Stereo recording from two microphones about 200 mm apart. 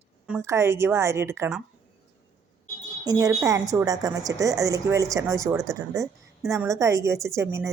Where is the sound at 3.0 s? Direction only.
15° right (ahead or behind).